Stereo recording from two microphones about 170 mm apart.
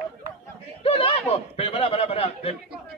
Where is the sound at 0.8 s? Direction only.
35° left (ahead or behind).